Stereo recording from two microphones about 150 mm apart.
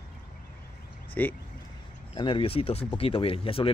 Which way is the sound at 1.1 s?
10° left (ahead or behind).